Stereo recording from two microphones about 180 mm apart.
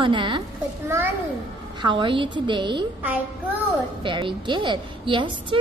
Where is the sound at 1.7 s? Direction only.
25° right (ahead or behind).